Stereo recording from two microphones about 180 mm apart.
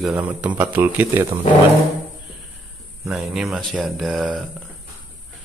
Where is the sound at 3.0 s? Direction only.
Centre (ahead or behind).